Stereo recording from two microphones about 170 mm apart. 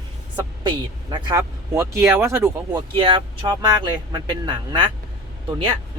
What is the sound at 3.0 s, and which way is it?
Speech, 30° right (ahead or behind).